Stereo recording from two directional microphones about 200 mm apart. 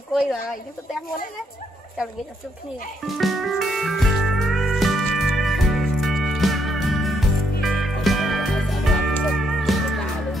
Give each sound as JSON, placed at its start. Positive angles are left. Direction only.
{"t": 3.1, "sound": "music", "side_deg": 0}